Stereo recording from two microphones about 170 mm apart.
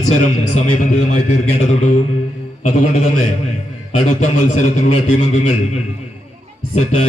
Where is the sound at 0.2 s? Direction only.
45° left (ahead or behind).